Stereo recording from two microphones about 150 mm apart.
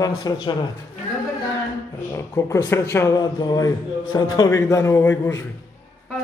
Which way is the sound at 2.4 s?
20° left (ahead or behind).